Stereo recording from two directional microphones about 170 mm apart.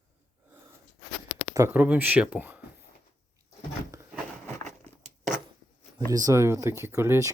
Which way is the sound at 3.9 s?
20° right (ahead or behind).